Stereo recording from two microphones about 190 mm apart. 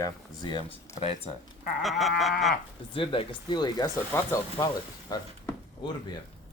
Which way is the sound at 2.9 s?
25° left (ahead or behind).